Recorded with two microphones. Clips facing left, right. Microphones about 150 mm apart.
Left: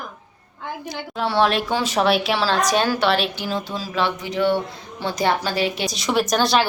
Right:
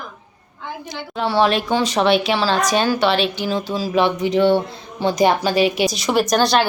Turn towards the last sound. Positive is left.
turn(degrees=0)  # may be behind; listen again after turning